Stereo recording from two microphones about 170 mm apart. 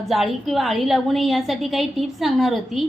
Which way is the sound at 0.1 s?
Centre (ahead or behind).